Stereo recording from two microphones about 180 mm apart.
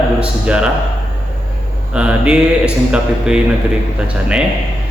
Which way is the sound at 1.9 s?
5° right (ahead or behind).